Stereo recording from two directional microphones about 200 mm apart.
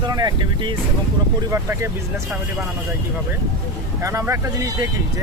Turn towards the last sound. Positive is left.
turn(degrees=-15)  # may be behind; listen again after turning